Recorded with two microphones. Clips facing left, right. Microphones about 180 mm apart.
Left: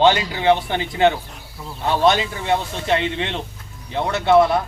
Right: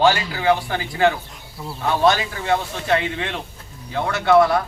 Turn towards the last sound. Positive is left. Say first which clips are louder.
# even
turn(degrees=20)  # may be behind; listen again after turning